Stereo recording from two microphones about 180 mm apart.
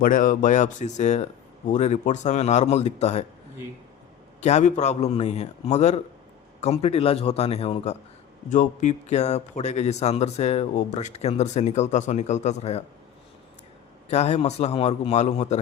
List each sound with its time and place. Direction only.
0.0 s a man's voice: 50° left (ahead or behind)
4.4 s a man's voice: 40° left (ahead or behind)
14.1 s a man's voice: 35° left (ahead or behind)